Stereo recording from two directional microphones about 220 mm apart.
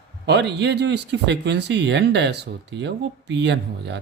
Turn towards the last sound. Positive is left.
turn(degrees=-50)  # may be behind; listen again after turning